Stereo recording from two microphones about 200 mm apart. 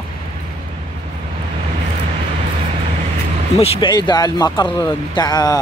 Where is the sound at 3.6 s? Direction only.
20° left (ahead or behind).